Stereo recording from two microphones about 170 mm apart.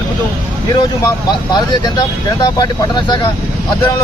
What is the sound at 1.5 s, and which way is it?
Speech, 25° left (ahead or behind).